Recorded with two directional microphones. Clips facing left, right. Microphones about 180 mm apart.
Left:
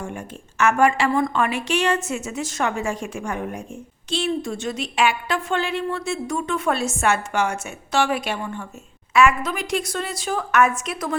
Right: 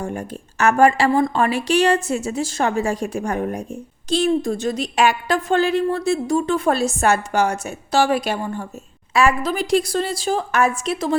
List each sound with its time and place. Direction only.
0.0 s a woman's voice: 40° right (ahead or behind)